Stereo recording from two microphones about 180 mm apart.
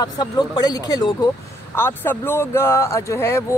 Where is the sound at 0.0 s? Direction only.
20° left (ahead or behind).